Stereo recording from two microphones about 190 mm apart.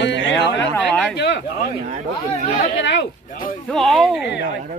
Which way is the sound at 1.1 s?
65° left (ahead or behind).